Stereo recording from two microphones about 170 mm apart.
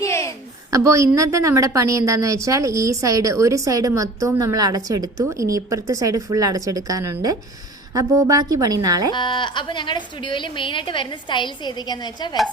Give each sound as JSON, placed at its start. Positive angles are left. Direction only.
{"t": 0.0, "sound": "a sound", "side_deg": 15}
{"t": 0.7, "sound": "a woman's voice", "side_deg": -20}
{"t": 9.1, "sound": "a woman's voice", "side_deg": 30}